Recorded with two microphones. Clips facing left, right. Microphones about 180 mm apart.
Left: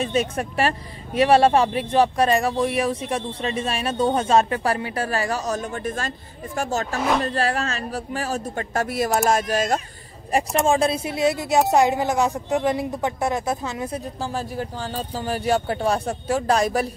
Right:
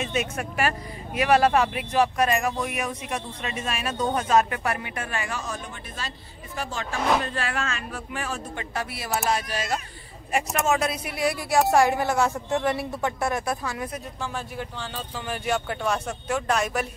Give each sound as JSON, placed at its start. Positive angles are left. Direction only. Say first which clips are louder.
{"t": 0.0, "sound": "speech", "louder": "left 5 dB", "side_deg": 35}
{"t": 7.0, "sound": "speech", "louder": "even", "side_deg": 0}
{"t": 7.2, "sound": "speech", "louder": "left 6 dB", "side_deg": 35}
{"t": 10.3, "sound": "speech", "louder": "left 4 dB", "side_deg": 30}